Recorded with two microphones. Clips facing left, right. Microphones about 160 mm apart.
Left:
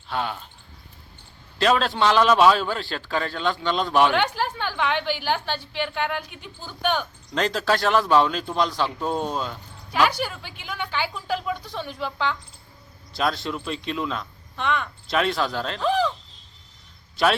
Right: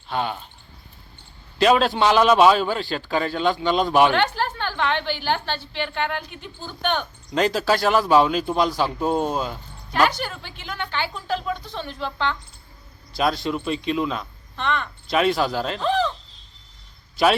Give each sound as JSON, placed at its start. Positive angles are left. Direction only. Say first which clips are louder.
{"t": 0.1, "sound": "a woman's voice", "louder": "right 2 dB", "side_deg": 0}
{"t": 1.5, "sound": "a woman's voice", "louder": "right 3 dB", "side_deg": -5}
{"t": 4.1, "sound": "a woman's voice", "louder": "right 1 dB", "side_deg": 10}
{"t": 9.9, "sound": "a woman's voice", "louder": "right 1 dB", "side_deg": 10}
{"t": 14.5, "sound": "speech", "louder": "even", "side_deg": 5}
{"t": 15.2, "sound": "a woman's voice", "louder": "right 4 dB", "side_deg": -5}
{"t": 15.8, "sound": "a woman's voice", "louder": "left 1 dB", "side_deg": 10}